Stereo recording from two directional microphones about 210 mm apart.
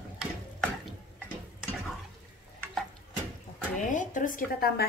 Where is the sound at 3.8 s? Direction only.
35° left (ahead or behind).